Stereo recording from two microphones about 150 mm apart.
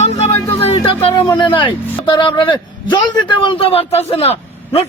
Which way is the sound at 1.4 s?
30° left (ahead or behind).